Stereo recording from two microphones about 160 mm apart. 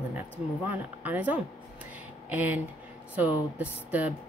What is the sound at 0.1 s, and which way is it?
Speech, 10° right (ahead or behind).